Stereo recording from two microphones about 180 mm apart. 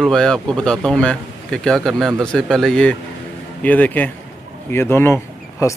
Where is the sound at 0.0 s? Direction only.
5° left (ahead or behind).